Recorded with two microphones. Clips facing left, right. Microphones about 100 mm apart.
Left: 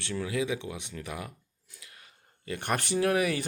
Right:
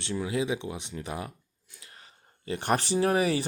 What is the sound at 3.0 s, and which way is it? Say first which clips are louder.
Speech: right 1 dB; 30° right (ahead or behind).